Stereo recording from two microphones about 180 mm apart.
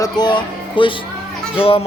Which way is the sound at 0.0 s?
25° left (ahead or behind).